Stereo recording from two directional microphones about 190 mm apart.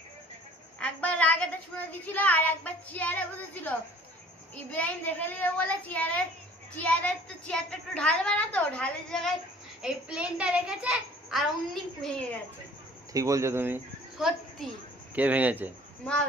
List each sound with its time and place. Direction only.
0.7 s a woman's voice: 5° left (ahead or behind)
1.9 s child singing: 10° left (ahead or behind)
6.8 s a woman's voice: 5° left (ahead or behind)
13.1 s speech: 15° right (ahead or behind)
14.1 s a woman's voice: centre (ahead or behind)